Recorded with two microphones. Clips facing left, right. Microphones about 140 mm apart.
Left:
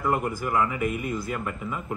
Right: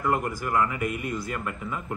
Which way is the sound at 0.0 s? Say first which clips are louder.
Left 1 dB; centre (ahead or behind).